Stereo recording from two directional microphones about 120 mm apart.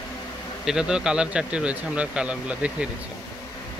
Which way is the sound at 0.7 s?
5° right (ahead or behind).